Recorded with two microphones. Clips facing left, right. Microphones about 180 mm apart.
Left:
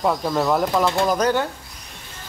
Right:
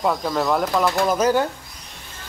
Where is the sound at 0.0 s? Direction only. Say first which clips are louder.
Left 1 dB; 5° left (ahead or behind).